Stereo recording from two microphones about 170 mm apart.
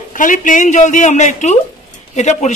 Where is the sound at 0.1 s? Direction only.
50° left (ahead or behind).